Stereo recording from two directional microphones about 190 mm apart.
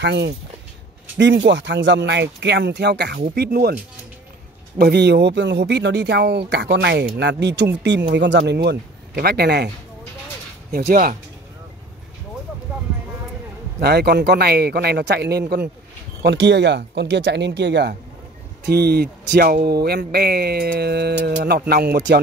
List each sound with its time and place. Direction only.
0.0 s speech: 65° right (ahead or behind)
10.9 s speech: 50° right (ahead or behind)
13.7 s speech: 60° right (ahead or behind)
16.2 s speech: 65° right (ahead or behind)